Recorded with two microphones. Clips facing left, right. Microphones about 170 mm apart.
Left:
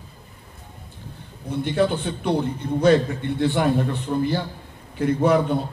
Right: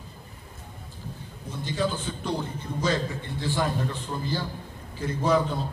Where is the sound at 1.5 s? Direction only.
65° left (ahead or behind).